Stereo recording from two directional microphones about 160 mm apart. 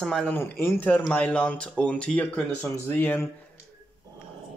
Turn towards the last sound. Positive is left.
turn(degrees=10)  # may be behind; listen again after turning